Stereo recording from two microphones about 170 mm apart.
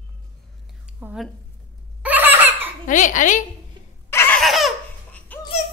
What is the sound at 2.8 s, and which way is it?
Speech, 50° left (ahead or behind).